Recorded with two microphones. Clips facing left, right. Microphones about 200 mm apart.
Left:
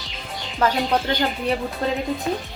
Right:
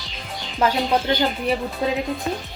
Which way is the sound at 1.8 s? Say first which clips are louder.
Right 1 dB; 5° right (ahead or behind).